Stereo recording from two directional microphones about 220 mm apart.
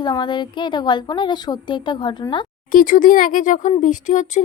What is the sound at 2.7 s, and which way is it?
Speech, 40° left (ahead or behind).